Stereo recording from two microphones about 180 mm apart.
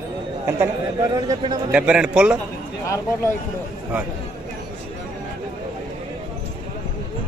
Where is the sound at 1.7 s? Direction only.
5° right (ahead or behind).